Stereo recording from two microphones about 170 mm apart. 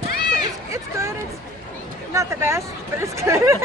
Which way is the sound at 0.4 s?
20° right (ahead or behind).